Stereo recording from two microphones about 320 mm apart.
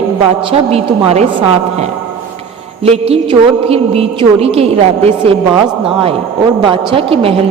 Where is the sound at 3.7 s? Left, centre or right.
Centre.